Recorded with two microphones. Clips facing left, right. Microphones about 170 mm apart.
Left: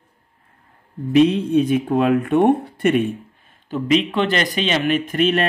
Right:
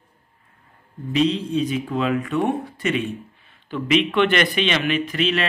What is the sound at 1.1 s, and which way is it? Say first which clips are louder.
Speech: left 6 dB; 55° left (ahead or behind).